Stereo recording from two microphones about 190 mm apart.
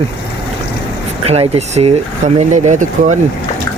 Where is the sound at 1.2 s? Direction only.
30° right (ahead or behind).